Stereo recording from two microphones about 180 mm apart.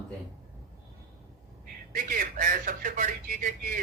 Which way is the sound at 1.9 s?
50° right (ahead or behind).